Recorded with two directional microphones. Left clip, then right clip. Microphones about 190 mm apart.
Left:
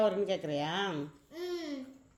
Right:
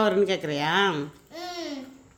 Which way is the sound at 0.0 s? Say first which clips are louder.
Right 7 dB; 35° right (ahead or behind).